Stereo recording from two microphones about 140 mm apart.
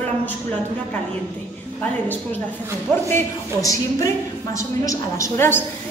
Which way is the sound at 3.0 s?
20° left (ahead or behind).